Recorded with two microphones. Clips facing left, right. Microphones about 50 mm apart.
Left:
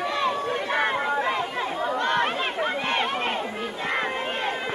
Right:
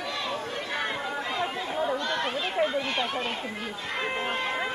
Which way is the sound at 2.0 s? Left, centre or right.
Left.